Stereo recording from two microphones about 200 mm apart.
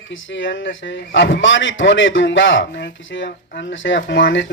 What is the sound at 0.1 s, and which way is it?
A man's voice, 70° left (ahead or behind).